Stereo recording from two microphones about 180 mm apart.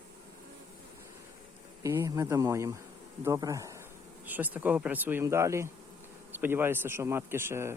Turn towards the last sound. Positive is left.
turn(degrees=-15)  # may be behind; listen again after turning